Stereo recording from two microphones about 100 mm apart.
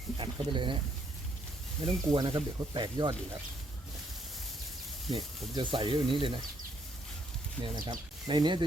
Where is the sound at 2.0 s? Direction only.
45° right (ahead or behind).